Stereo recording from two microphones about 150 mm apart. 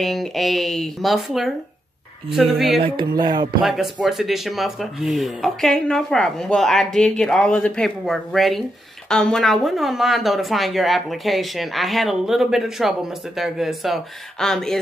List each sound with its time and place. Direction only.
0.0 s speech: centre (ahead or behind)
2.8 s music: 30° right (ahead or behind)
3.6 s speech: centre (ahead or behind)